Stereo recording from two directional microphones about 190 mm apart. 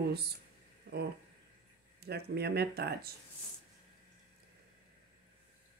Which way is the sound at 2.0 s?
60° right (ahead or behind).